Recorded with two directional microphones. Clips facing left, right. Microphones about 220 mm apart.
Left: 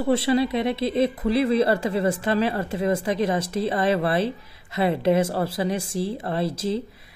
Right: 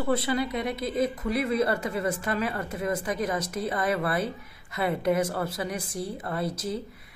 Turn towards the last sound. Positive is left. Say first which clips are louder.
# left 5 dB
turn(degrees=25)  # may be behind; listen again after turning